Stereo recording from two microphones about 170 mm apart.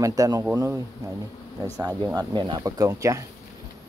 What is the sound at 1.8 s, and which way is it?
Speech, 20° right (ahead or behind).